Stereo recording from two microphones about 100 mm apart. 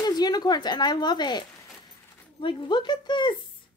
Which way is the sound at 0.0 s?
45° left (ahead or behind).